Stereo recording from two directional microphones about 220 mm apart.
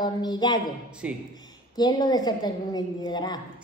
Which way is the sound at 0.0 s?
20° left (ahead or behind).